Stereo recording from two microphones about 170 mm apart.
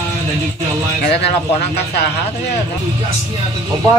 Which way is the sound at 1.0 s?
75° left (ahead or behind).